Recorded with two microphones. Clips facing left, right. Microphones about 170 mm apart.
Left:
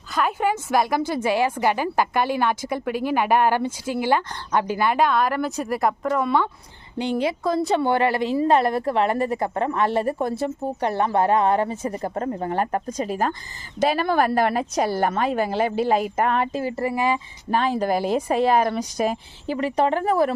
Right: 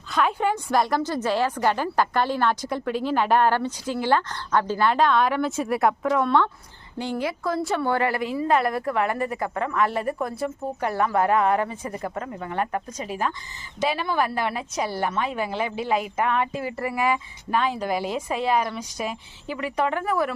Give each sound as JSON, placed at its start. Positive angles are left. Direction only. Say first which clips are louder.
{"t": 0.1, "sound": "a woman's voice", "louder": "left 1 dB", "side_deg": 0}
{"t": 7.0, "sound": "a woman's voice", "louder": "left 4 dB", "side_deg": 20}